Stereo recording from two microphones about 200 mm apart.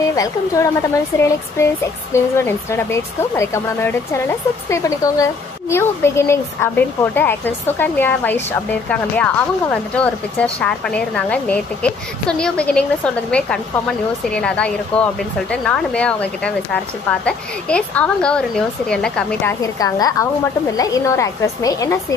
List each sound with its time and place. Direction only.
1.1 s speech: 15° left (ahead or behind)
19.6 s speech: 20° left (ahead or behind)